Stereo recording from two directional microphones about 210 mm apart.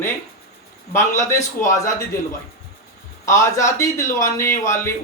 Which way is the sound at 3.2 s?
15° left (ahead or behind).